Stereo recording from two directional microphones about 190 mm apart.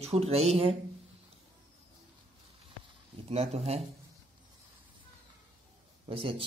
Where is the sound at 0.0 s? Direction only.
35° right (ahead or behind).